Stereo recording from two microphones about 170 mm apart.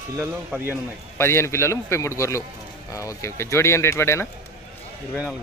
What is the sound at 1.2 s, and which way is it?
A man's voice, 15° left (ahead or behind).